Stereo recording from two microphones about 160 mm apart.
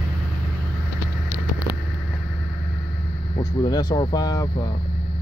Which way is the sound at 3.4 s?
25° left (ahead or behind).